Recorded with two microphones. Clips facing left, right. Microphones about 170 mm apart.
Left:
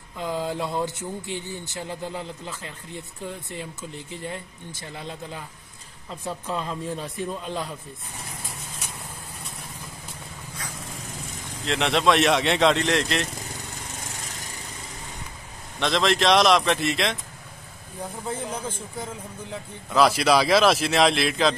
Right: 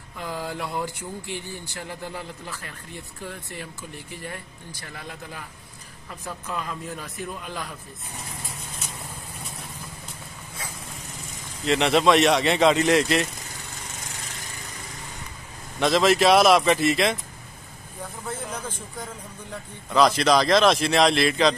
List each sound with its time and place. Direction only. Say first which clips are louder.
0.2 s speech: left 4 dB; 20° left (ahead or behind)
11.6 s speech: right 3 dB; centre (ahead or behind)
15.8 s speech: right 3 dB; 5° right (ahead or behind)
18.2 s a man's voice: left 2 dB; 10° left (ahead or behind)